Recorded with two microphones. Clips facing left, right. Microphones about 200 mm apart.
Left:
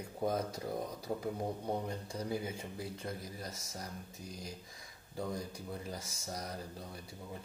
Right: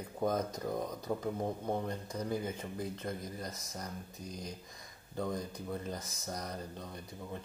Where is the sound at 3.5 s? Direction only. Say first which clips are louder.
Right 2 dB; 25° left (ahead or behind).